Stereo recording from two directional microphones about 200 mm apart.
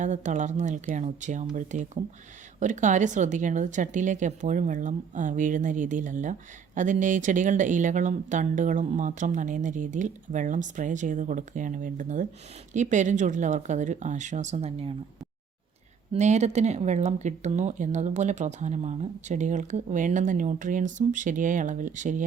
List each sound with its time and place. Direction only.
0.0 s speech: 35° right (ahead or behind)
16.1 s speech: 35° right (ahead or behind)